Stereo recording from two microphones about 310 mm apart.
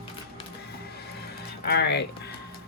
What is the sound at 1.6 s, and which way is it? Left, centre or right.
Speech, left.